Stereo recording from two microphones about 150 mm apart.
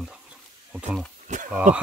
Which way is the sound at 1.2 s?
55° right (ahead or behind).